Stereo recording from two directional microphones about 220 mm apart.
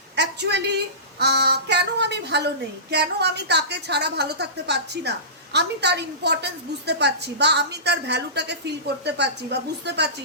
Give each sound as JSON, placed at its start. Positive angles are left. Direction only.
{"t": 0.2, "sound": "a woman's voice", "side_deg": -50}